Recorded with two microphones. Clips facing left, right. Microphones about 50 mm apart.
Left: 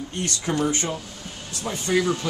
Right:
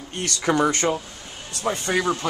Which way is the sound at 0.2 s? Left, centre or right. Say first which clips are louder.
Right 4 dB; right.